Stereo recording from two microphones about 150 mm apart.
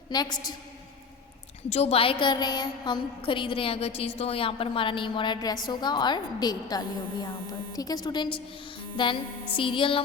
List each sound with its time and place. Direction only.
0.1 s a woman's voice: 25° left (ahead or behind)
1.7 s a woman's voice: 40° left (ahead or behind)